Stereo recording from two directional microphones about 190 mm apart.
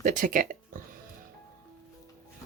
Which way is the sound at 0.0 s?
45° right (ahead or behind).